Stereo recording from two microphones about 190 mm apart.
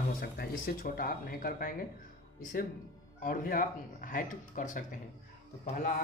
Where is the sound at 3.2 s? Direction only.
45° left (ahead or behind).